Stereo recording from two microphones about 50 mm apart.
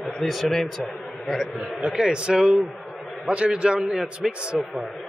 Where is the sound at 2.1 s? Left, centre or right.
Centre.